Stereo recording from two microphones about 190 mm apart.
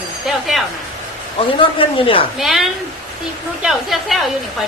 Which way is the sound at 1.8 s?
30° left (ahead or behind).